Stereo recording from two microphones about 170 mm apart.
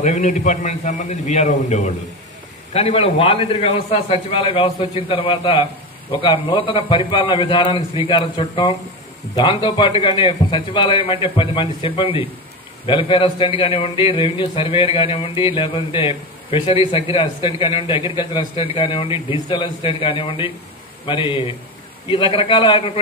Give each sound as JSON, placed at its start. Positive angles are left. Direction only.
{"t": 0.0, "sound": "a man's voice", "side_deg": 50}